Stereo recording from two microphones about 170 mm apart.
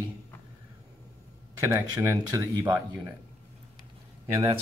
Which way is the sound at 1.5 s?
20° right (ahead or behind).